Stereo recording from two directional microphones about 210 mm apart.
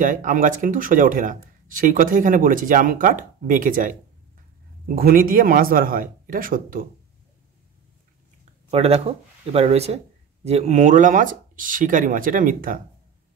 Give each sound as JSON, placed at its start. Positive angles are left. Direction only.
{"t": 0.0, "sound": "speech", "side_deg": -40}
{"t": 4.9, "sound": "speech", "side_deg": -45}
{"t": 8.6, "sound": "speech", "side_deg": -30}